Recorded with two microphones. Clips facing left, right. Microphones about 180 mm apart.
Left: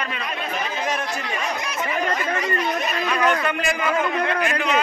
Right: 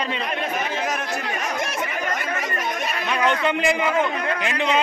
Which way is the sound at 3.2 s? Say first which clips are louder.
Right 3 dB; 20° right (ahead or behind).